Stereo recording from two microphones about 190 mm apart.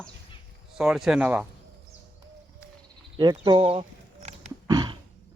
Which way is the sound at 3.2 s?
25° right (ahead or behind).